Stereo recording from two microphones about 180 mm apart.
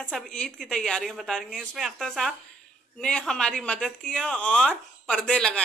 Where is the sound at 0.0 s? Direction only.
5° left (ahead or behind).